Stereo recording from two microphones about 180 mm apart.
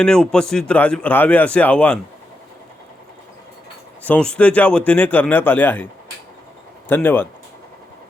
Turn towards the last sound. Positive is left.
turn(degrees=10)  # may be behind; listen again after turning